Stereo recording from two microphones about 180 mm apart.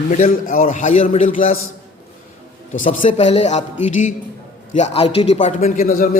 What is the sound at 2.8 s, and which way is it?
A man's voice, 45° left (ahead or behind).